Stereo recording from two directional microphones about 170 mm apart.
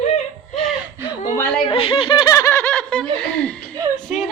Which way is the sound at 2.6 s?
5° left (ahead or behind).